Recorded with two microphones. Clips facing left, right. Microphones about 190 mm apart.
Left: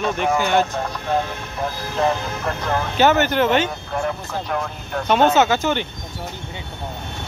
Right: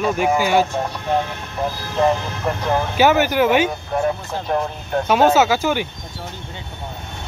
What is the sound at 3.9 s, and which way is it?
Speech, 25° right (ahead or behind).